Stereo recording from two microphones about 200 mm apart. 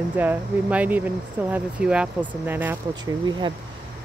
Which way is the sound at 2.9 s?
20° right (ahead or behind).